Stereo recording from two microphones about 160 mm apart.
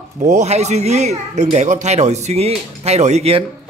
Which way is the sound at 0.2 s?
45° right (ahead or behind).